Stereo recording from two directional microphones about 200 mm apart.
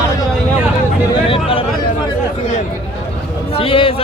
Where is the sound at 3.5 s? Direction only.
25° left (ahead or behind).